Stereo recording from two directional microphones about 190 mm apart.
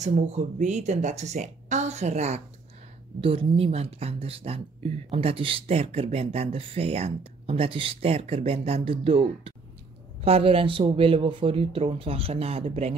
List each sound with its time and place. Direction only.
0.0 s speech: 40° right (ahead or behind)